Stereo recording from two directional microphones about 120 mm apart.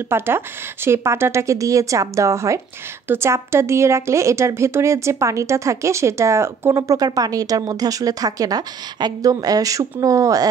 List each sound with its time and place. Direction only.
0.1 s a woman's voice: 20° right (ahead or behind)